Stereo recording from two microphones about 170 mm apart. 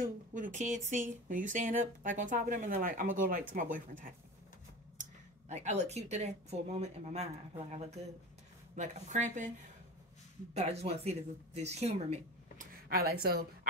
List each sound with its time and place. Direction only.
0.0 s speech: 50° right (ahead or behind)
5.5 s speech: 40° right (ahead or behind)
10.5 s speech: 40° right (ahead or behind)
12.8 s a woman's voice: 65° right (ahead or behind)